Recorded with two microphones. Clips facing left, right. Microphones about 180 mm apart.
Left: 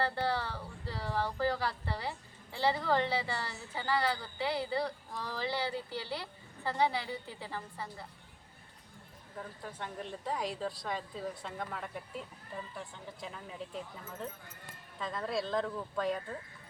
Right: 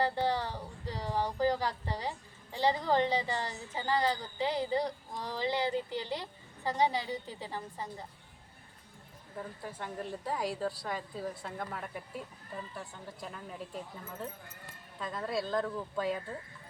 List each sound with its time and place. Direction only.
0.0 s speech: 15° right (ahead or behind)
9.4 s speech: 5° right (ahead or behind)